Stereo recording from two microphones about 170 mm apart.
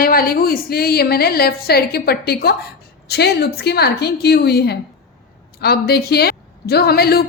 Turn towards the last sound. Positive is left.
turn(degrees=65)  # may be behind; listen again after turning